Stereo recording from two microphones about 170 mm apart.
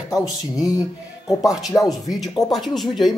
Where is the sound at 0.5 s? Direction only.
20° left (ahead or behind).